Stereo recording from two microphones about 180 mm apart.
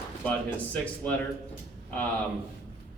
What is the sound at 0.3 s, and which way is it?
Speech, 10° left (ahead or behind).